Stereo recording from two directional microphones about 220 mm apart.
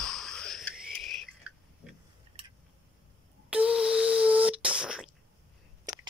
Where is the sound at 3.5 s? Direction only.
5° right (ahead or behind).